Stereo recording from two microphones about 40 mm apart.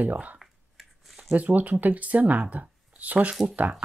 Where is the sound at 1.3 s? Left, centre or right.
Right.